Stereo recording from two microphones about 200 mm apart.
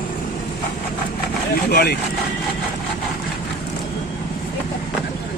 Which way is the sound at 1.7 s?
50° left (ahead or behind).